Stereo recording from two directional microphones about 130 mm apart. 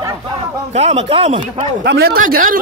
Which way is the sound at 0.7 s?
55° right (ahead or behind).